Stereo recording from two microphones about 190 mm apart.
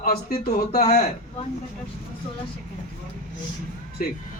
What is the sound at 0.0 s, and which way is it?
Speech, 55° left (ahead or behind).